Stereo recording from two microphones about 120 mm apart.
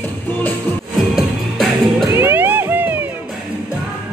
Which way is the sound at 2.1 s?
20° right (ahead or behind).